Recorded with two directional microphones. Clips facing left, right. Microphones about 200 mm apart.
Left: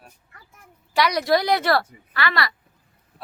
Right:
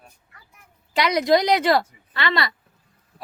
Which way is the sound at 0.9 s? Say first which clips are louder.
Right 2 dB; 20° right (ahead or behind).